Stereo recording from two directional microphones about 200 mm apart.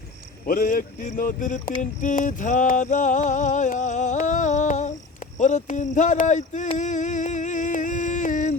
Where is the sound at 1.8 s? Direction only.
40° left (ahead or behind).